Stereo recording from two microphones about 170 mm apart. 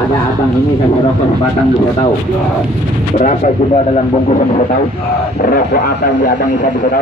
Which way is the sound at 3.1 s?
45° left (ahead or behind).